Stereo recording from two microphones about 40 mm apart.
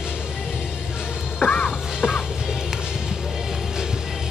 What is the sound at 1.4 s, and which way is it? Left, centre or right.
Music, left.